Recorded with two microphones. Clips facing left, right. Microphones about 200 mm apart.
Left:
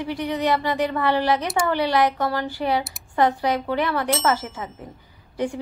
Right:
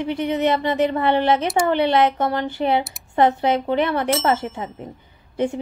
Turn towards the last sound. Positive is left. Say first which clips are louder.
# right 3 dB
turn(degrees=-25)  # may be behind; listen again after turning